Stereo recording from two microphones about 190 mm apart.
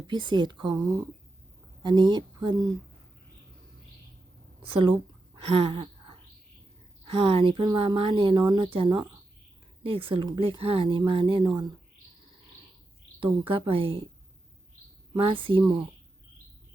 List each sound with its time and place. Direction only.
0.1 s a woman's voice: 25° right (ahead or behind)
4.6 s a sound: 30° right (ahead or behind)
7.0 s a woman's voice: 25° right (ahead or behind)
13.5 s a woman's voice: 30° right (ahead or behind)
15.1 s a woman's voice: 25° right (ahead or behind)